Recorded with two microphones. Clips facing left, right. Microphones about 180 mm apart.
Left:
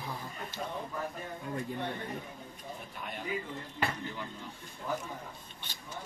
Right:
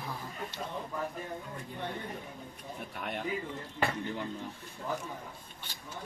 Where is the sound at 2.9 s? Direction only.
65° right (ahead or behind).